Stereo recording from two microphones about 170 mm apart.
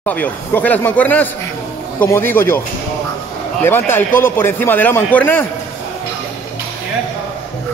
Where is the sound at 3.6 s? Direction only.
10° left (ahead or behind).